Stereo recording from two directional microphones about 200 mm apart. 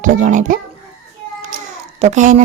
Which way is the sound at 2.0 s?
35° right (ahead or behind).